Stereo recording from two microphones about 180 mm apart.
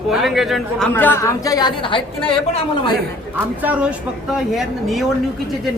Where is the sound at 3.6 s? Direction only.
5° right (ahead or behind).